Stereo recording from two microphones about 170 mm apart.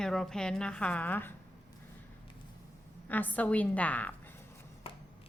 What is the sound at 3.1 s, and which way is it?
A woman's voice, 10° left (ahead or behind).